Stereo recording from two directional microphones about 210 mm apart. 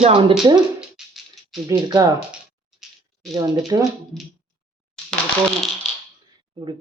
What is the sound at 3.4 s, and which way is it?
Speech, 15° right (ahead or behind).